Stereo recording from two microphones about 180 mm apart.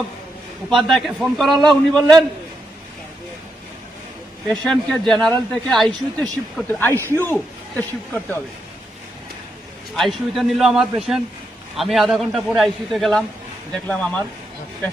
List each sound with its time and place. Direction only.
0.7 s speech: centre (ahead or behind)
4.4 s speech: centre (ahead or behind)
6.9 s a man's voice: 15° right (ahead or behind)
9.9 s speech: centre (ahead or behind)